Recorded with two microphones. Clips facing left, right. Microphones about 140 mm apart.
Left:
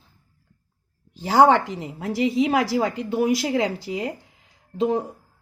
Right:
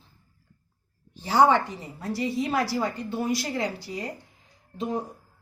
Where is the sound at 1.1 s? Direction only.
90° left.